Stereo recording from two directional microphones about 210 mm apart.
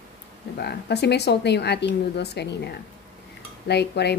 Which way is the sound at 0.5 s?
50° left (ahead or behind).